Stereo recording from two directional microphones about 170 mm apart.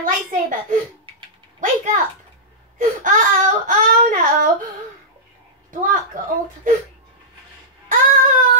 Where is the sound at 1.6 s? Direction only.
45° right (ahead or behind).